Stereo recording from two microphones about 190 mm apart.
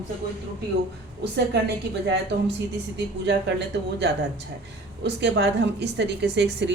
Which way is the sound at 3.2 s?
65° right (ahead or behind).